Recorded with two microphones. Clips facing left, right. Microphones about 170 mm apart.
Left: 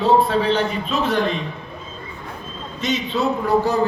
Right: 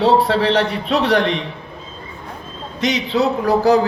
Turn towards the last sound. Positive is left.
turn(degrees=-75)  # may be behind; listen again after turning